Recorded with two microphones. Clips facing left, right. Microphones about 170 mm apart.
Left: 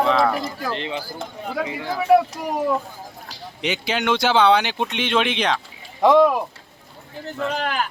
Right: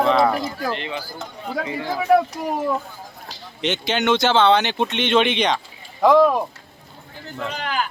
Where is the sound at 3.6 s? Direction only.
5° left (ahead or behind).